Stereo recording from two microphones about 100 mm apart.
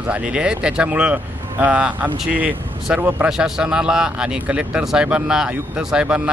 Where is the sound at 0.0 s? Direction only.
10° right (ahead or behind).